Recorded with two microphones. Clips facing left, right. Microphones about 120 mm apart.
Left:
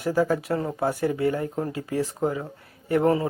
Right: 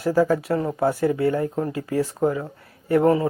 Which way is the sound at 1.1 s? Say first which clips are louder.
Right 3 dB; 25° left (ahead or behind).